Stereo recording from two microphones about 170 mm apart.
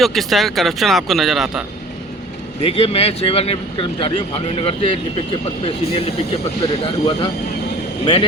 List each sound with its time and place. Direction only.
0.0 s speech: centre (ahead or behind)
2.6 s speech: 35° left (ahead or behind)